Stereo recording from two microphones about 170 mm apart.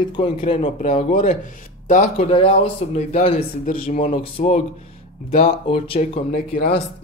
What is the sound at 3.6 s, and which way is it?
Speech, 50° left (ahead or behind).